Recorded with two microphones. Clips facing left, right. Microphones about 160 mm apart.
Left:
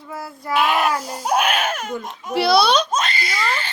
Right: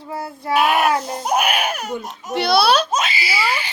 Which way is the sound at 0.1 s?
25° right (ahead or behind).